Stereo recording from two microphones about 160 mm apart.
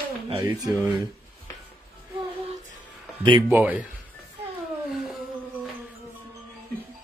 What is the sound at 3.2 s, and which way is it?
Speech, 30° right (ahead or behind).